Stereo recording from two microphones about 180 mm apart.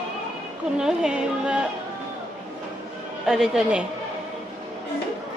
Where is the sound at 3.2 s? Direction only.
5° right (ahead or behind).